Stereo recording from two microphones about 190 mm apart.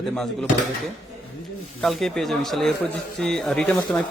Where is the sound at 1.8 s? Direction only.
Centre (ahead or behind).